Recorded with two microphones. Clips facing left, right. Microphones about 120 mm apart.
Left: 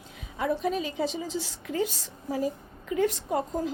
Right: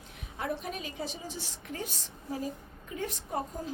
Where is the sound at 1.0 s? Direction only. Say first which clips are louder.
Left 9 dB; 90° left.